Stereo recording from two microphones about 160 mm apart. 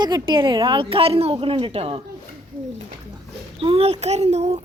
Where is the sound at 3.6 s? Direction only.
35° right (ahead or behind).